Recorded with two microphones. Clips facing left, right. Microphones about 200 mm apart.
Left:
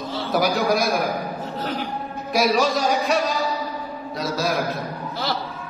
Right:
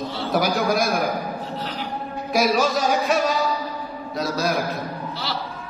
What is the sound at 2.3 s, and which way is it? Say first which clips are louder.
A man's voice: even; centre (ahead or behind).